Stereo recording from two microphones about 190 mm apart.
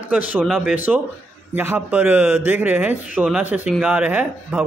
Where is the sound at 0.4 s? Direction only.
Centre (ahead or behind).